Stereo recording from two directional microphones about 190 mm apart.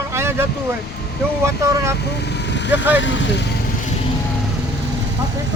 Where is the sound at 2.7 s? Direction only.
10° right (ahead or behind).